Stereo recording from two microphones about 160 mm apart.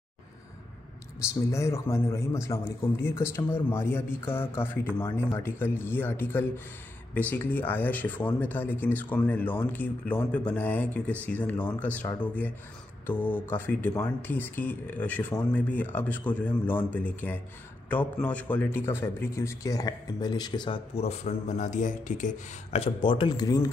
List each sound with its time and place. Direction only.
1.5 s a man's voice: 20° left (ahead or behind)